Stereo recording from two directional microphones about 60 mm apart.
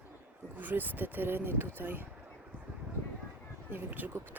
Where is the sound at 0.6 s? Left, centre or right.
Right.